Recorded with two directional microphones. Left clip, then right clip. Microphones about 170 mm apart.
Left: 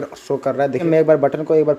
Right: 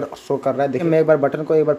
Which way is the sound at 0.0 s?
10° left (ahead or behind).